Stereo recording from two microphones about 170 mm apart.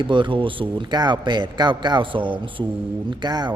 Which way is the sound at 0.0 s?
30° right (ahead or behind).